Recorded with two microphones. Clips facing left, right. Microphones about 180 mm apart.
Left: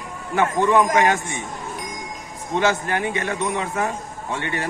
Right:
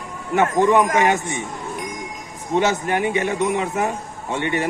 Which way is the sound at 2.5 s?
20° right (ahead or behind).